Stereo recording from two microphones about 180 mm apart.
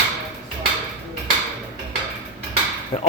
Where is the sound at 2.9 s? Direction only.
30° left (ahead or behind).